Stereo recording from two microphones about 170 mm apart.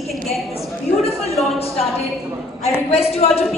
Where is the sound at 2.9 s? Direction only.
35° left (ahead or behind).